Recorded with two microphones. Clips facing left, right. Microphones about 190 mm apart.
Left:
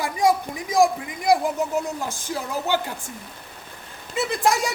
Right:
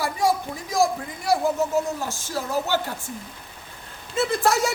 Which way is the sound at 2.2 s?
15° left (ahead or behind).